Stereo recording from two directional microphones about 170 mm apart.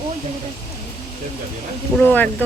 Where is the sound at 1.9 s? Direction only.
10° left (ahead or behind).